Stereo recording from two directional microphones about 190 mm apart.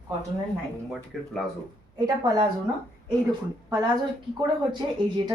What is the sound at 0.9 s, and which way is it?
Speech, 5° left (ahead or behind).